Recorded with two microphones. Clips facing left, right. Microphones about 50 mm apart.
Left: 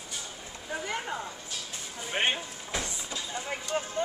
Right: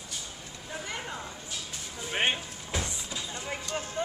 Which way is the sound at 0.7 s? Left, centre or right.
Centre.